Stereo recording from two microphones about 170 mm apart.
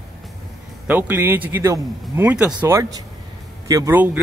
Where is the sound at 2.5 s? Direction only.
20° right (ahead or behind).